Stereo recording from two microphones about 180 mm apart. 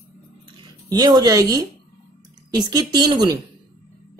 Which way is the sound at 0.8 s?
25° right (ahead or behind).